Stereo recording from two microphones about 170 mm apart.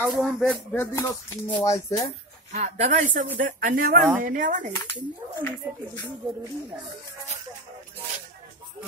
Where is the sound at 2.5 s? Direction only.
45° right (ahead or behind).